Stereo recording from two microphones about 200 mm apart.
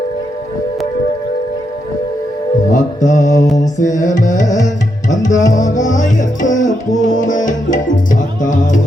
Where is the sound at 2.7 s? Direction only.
40° left (ahead or behind).